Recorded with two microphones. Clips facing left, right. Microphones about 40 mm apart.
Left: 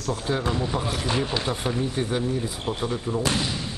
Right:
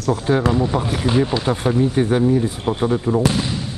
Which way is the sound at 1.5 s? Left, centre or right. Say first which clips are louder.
Right 8 dB; right.